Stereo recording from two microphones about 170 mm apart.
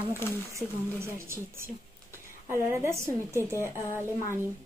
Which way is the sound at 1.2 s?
15° right (ahead or behind).